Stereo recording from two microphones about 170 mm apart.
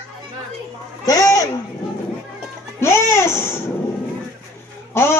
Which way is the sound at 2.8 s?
15° left (ahead or behind).